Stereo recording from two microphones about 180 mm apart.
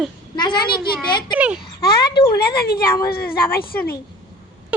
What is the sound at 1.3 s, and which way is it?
Speech, 5° right (ahead or behind).